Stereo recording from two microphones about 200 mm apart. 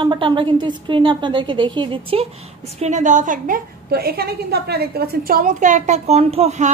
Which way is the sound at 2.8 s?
35° right (ahead or behind).